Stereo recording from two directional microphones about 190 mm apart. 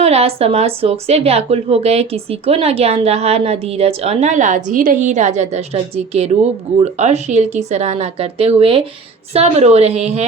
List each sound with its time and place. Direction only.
0.0 s a woman's voice: 30° right (ahead or behind)